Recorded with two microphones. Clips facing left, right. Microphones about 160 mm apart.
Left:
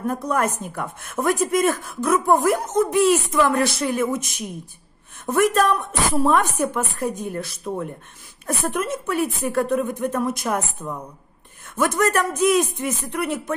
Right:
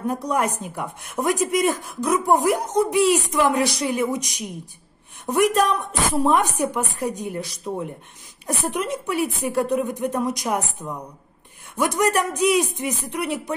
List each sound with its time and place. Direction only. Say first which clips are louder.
0.0 s a woman's voice: even; 15° right (ahead or behind)